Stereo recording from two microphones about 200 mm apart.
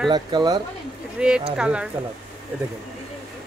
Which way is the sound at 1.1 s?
5° right (ahead or behind).